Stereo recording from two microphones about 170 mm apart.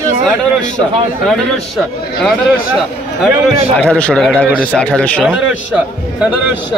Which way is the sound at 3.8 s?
5° left (ahead or behind).